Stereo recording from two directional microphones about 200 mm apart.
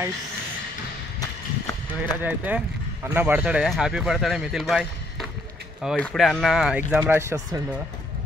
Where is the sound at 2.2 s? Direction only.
5° right (ahead or behind).